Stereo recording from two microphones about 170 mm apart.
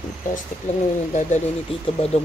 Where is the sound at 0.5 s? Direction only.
45° left (ahead or behind).